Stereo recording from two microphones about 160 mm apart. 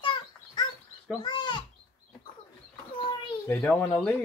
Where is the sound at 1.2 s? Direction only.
30° left (ahead or behind).